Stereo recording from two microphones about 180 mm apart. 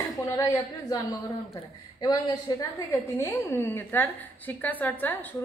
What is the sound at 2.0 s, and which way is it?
A woman's voice, 20° left (ahead or behind).